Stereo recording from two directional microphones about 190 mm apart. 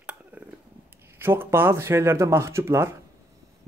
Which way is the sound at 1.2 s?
10° right (ahead or behind).